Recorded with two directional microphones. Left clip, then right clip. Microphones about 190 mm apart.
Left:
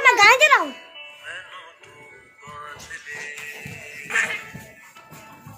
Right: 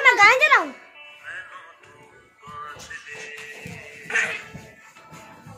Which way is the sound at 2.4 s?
35° left (ahead or behind).